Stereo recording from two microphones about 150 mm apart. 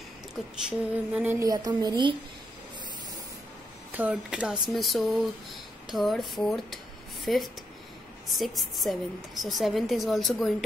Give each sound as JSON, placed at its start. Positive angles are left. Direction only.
{"t": 0.7, "sound": "a sound", "side_deg": -10}
{"t": 1.4, "sound": "a woman's voice", "side_deg": -25}
{"t": 3.9, "sound": "speech", "side_deg": -10}
{"t": 8.4, "sound": "speech", "side_deg": 0}